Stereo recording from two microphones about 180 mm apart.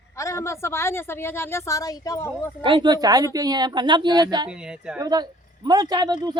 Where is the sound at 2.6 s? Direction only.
25° right (ahead or behind).